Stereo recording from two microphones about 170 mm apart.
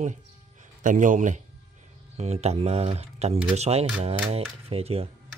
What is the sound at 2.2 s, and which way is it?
Speech, 40° right (ahead or behind).